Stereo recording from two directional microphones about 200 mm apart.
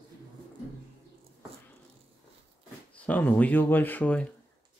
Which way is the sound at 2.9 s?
5° left (ahead or behind).